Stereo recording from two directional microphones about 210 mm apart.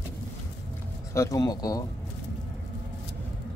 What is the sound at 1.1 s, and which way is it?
Speech, 15° left (ahead or behind).